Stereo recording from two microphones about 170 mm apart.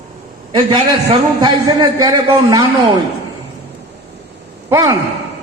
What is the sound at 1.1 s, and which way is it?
A man's voice, 25° right (ahead or behind).